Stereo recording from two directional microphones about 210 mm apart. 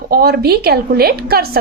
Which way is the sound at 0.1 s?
45° right (ahead or behind).